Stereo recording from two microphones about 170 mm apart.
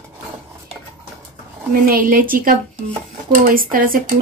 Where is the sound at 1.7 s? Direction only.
55° right (ahead or behind).